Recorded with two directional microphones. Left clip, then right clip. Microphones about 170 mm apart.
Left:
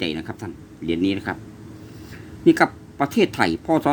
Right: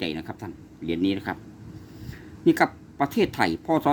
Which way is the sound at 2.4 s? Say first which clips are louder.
Left 4 dB; 5° right (ahead or behind).